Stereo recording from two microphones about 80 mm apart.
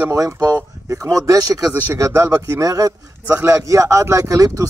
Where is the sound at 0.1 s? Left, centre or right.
Right.